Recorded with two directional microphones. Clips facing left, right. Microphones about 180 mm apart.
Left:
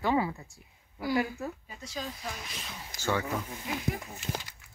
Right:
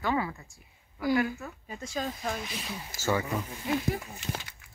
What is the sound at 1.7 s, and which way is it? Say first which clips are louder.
Speech: right 5 dB; 50° right (ahead or behind).